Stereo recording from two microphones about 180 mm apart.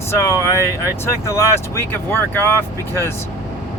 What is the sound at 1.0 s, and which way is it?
Speech, 15° left (ahead or behind).